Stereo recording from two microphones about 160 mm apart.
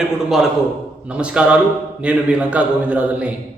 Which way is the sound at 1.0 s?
5° right (ahead or behind).